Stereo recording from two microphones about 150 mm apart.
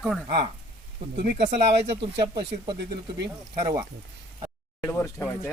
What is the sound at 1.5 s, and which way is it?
Speech, 35° right (ahead or behind).